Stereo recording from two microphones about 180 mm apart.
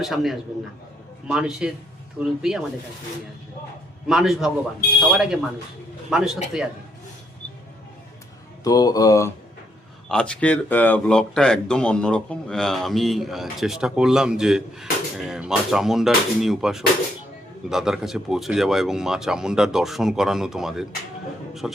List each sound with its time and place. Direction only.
0.0 s speech: centre (ahead or behind)
4.0 s speech: centre (ahead or behind)
8.6 s speech: 20° left (ahead or behind)
10.1 s speech: 5° left (ahead or behind)